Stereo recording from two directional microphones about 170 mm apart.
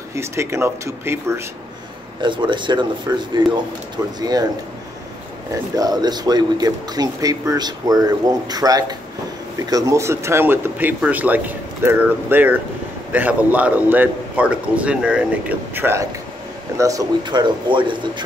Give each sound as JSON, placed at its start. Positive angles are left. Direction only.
{"t": 0.1, "sound": "a man's voice", "side_deg": -15}
{"t": 2.2, "sound": "speech", "side_deg": -30}
{"t": 5.5, "sound": "a man's voice", "side_deg": -25}